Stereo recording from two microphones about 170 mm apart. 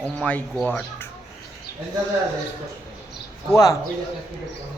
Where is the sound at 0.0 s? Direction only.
10° left (ahead or behind).